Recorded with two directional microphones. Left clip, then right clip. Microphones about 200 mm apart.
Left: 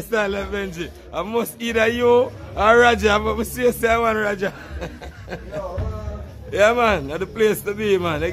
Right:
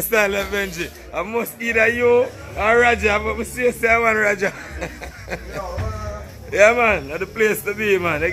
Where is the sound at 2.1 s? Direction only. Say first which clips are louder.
Even; 35° left (ahead or behind).